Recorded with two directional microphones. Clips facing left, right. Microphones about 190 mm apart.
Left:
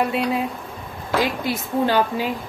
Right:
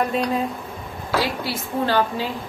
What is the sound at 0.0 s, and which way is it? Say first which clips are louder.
Speech: even; 5° left (ahead or behind).